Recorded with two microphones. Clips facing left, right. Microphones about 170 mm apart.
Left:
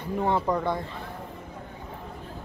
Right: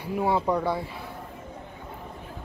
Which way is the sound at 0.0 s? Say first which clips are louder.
Right 1 dB; 10° right (ahead or behind).